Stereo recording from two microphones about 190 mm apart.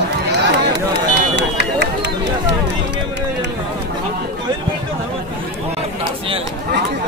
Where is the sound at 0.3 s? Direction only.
65° right (ahead or behind).